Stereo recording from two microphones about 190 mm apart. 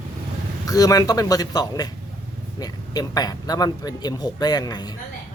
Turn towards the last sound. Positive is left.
turn(degrees=20)  # may be behind; listen again after turning